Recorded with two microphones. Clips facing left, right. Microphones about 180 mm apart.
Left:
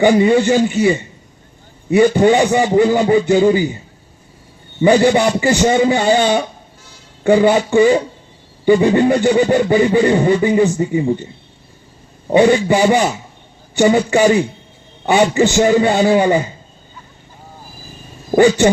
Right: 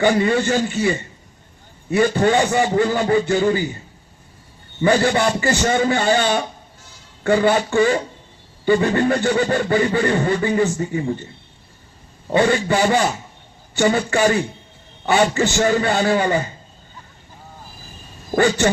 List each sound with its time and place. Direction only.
0.0 s speech: 15° left (ahead or behind)
4.8 s speech: 15° left (ahead or behind)
12.3 s speech: 15° left (ahead or behind)
18.3 s speech: 15° left (ahead or behind)